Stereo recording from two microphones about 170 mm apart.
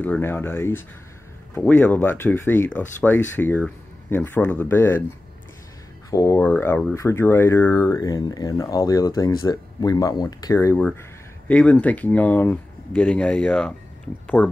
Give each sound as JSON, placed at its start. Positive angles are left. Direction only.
{"t": 0.0, "sound": "speech", "side_deg": 10}
{"t": 6.0, "sound": "speech", "side_deg": 20}